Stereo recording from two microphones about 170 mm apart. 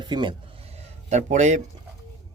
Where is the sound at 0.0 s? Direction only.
25° right (ahead or behind); by 1.6 s 45° right (ahead or behind).